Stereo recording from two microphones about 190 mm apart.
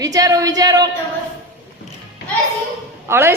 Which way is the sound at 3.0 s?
15° right (ahead or behind).